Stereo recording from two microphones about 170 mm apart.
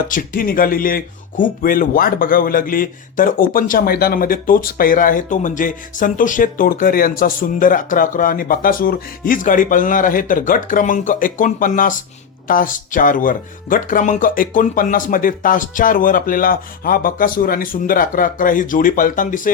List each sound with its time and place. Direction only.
0.1 s speech: 55° left (ahead or behind)